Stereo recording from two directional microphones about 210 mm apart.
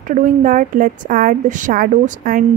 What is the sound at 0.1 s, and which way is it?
A woman's voice, 40° right (ahead or behind).